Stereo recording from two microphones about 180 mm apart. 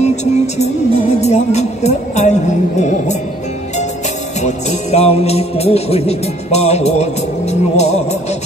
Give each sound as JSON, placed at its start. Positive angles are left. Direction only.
{"t": 0.0, "sound": "music", "side_deg": 40}
{"t": 4.4, "sound": "music", "side_deg": 40}